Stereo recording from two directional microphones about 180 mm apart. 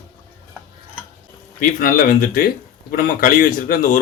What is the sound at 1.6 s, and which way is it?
Speech, 50° left (ahead or behind).